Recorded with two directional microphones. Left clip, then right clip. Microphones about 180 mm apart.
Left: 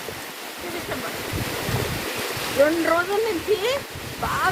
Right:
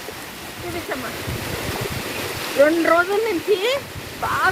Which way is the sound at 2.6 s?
20° right (ahead or behind).